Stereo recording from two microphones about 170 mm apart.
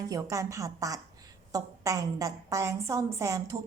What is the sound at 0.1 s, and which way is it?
A woman's voice, 20° right (ahead or behind).